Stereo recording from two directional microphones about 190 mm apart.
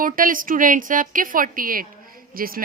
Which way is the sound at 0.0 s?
45° right (ahead or behind).